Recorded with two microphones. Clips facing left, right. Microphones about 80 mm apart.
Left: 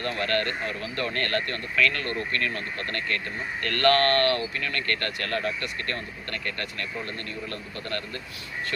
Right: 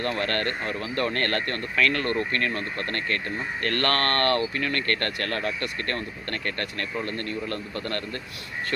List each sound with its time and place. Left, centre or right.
0.0 s speech: right
3.6 s speech: right